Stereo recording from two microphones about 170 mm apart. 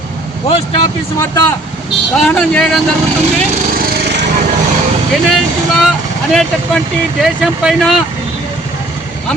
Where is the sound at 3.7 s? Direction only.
60° right (ahead or behind); by 4.3 s 85° right.